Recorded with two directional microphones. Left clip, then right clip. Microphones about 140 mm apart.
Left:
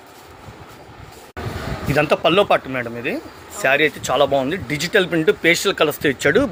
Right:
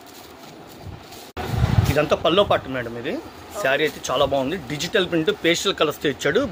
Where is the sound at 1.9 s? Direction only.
50° left (ahead or behind).